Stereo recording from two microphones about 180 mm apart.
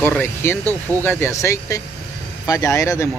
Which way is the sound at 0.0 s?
10° left (ahead or behind).